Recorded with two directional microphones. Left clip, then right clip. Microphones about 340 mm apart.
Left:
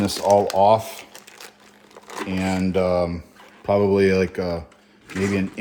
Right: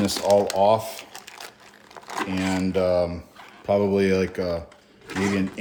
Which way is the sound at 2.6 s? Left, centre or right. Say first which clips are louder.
Left 1 dB; centre.